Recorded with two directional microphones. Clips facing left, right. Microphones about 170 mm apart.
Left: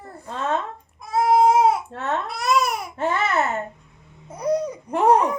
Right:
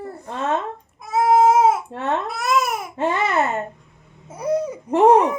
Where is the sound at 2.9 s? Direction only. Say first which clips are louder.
Right 3 dB; 20° right (ahead or behind).